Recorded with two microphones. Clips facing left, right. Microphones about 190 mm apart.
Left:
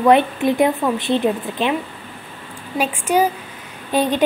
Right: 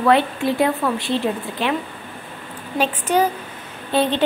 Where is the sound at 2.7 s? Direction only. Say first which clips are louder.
Left 1 dB; 10° left (ahead or behind).